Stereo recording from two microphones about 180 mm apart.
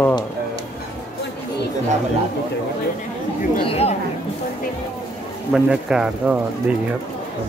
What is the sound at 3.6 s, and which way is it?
Speech, 35° left (ahead or behind).